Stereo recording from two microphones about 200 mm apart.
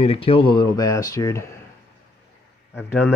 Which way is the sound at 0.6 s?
15° left (ahead or behind).